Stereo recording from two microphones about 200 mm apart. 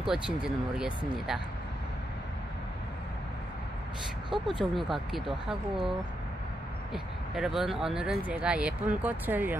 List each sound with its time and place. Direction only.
0.0 s speech: 5° right (ahead or behind)
4.3 s speech: 25° right (ahead or behind)
5.5 s speech: centre (ahead or behind)